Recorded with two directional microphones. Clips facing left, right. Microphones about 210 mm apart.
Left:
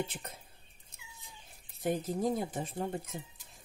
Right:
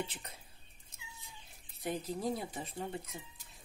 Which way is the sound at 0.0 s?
50° left (ahead or behind).